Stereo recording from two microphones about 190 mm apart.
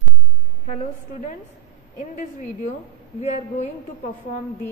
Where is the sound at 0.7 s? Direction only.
40° left (ahead or behind).